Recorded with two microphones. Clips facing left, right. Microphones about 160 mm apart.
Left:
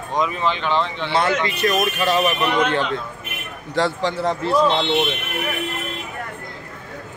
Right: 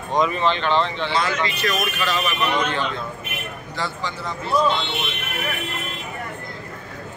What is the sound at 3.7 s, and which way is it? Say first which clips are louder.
Speech: left 9 dB; 75° left (ahead or behind).